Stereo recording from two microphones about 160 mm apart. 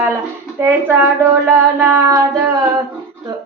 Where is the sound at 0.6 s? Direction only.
15° right (ahead or behind).